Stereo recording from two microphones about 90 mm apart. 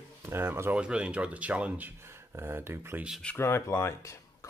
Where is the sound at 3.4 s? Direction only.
30° left (ahead or behind).